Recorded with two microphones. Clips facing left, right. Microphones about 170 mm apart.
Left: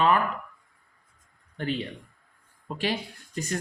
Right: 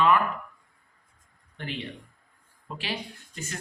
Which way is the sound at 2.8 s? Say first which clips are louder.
Left 6 dB; 45° left (ahead or behind).